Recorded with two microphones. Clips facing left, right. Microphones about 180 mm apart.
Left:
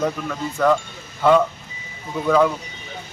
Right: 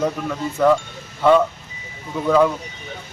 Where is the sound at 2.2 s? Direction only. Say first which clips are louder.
Right 1 dB; centre (ahead or behind).